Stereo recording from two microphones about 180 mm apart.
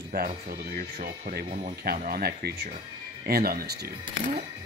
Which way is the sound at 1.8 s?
55° right (ahead or behind).